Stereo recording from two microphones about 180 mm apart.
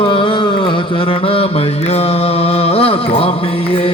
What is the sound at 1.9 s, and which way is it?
Mantra, 35° left (ahead or behind).